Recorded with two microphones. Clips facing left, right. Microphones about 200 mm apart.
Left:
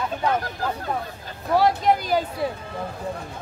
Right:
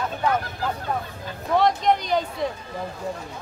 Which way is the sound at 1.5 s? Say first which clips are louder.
Left 1 dB; 5° left (ahead or behind).